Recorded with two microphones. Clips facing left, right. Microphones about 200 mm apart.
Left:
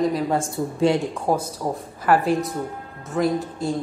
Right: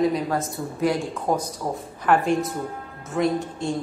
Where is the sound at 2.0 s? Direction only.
5° left (ahead or behind).